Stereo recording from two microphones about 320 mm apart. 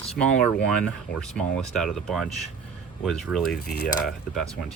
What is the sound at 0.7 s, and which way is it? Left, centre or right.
Speech, centre.